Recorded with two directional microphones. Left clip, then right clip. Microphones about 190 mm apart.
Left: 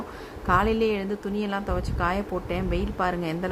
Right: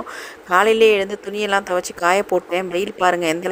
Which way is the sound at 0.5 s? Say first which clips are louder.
Right 10 dB; 30° right (ahead or behind).